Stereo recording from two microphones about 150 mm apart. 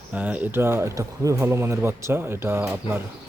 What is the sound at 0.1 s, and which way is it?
Speech, 10° right (ahead or behind).